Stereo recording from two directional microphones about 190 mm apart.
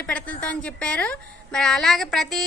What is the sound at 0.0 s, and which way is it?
A woman's voice, 5° left (ahead or behind).